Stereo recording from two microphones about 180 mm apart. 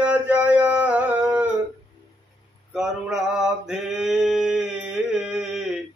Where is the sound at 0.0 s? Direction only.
5° right (ahead or behind).